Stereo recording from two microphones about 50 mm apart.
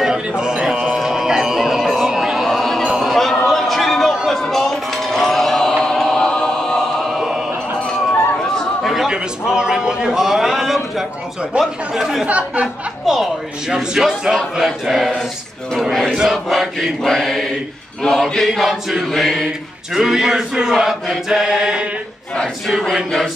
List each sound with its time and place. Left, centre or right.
0.4 s a sound: centre
7.1 s music: centre
8.8 s a sound: centre
11.5 s speech: right
11.9 s chant: centre
12.3 s speech: right
13.0 s a man's voice: centre
15.9 s mantra: centre
16.2 s chant: centre
17.0 s mantra: centre
18.0 s chant: centre
19.9 s male singing: centre
22.7 s chant: centre